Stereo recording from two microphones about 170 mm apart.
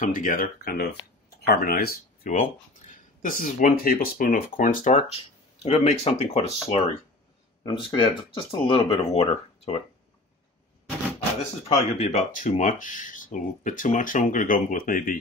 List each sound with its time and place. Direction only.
0.0 s speech: 50° left (ahead or behind)
2.3 s speech: 45° left (ahead or behind)
4.9 s speech: 35° left (ahead or behind)
7.6 s speech: 25° left (ahead or behind)
11.6 s speech: 35° left (ahead or behind); by 15.1 s 50° left (ahead or behind)